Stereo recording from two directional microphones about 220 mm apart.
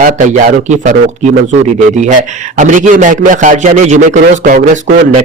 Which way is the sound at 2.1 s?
35° right (ahead or behind).